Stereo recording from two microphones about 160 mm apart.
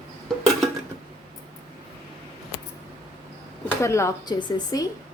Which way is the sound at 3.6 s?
15° left (ahead or behind).